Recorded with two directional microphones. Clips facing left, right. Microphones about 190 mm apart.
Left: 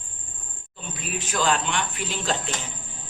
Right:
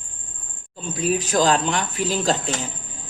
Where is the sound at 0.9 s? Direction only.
40° right (ahead or behind).